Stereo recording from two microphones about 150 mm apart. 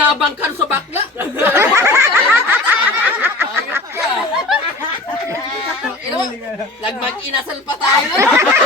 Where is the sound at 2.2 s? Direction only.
10° right (ahead or behind).